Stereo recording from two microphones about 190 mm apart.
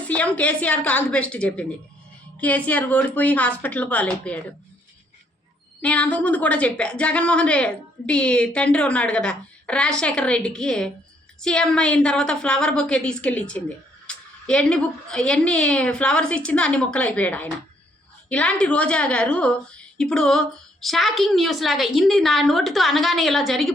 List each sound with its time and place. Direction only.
0.1 s a woman's voice: 5° left (ahead or behind)
5.8 s a woman's voice: 5° left (ahead or behind)